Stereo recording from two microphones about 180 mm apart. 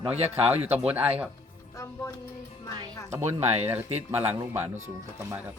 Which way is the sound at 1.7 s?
15° left (ahead or behind).